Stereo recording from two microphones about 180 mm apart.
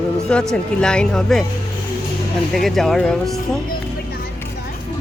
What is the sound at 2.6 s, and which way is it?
Speech, centre (ahead or behind).